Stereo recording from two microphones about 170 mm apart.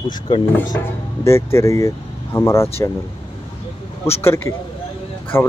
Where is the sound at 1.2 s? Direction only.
15° left (ahead or behind).